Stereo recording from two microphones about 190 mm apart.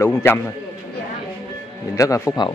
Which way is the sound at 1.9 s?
15° left (ahead or behind).